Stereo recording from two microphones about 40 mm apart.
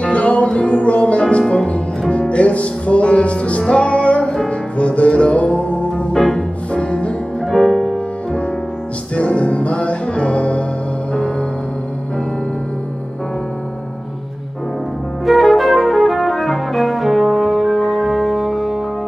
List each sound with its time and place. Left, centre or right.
0.0 s music: left
6.1 s organ: centre
6.7 s music: left
7.5 s music: centre
9.1 s music: left
15.2 s music: centre